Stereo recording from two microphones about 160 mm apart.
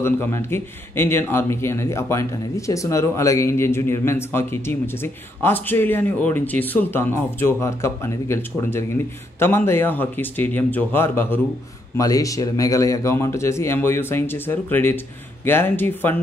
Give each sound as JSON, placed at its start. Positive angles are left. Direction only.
{"t": 0.0, "sound": "a man's voice", "side_deg": 15}